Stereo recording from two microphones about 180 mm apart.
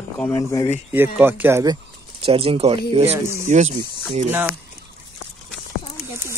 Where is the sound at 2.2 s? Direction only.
30° right (ahead or behind).